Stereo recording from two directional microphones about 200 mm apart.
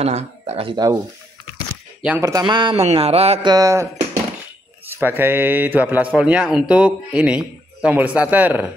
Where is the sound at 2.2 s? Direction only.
15° right (ahead or behind).